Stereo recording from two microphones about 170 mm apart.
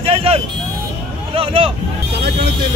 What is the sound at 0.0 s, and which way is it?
Vehicle, 35° right (ahead or behind).